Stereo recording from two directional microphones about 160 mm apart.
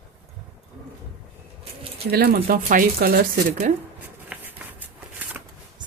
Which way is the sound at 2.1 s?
70° right (ahead or behind).